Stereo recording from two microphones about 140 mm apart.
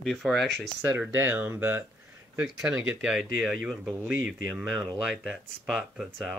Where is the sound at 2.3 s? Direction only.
5° right (ahead or behind).